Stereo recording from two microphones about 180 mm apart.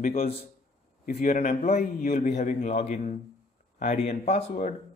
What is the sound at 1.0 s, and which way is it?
A man's voice, 50° left (ahead or behind).